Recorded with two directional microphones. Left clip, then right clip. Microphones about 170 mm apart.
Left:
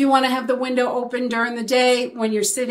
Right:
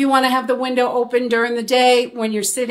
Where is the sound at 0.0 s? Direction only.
35° right (ahead or behind).